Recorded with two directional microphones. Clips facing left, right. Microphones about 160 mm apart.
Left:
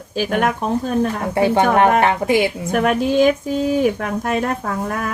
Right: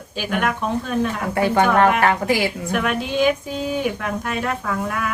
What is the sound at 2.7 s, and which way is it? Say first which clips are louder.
Speech: left 5 dB; 45° left (ahead or behind).